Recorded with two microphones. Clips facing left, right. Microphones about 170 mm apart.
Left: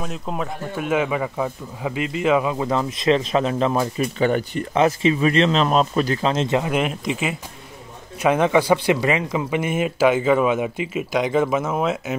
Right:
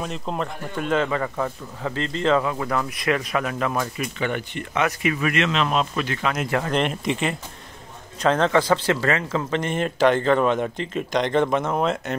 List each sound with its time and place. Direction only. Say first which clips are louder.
0.0 s speech: even; 5° left (ahead or behind); by 6.6 s 25° left (ahead or behind)
6.6 s speech: left 1 dB; 5° left (ahead or behind)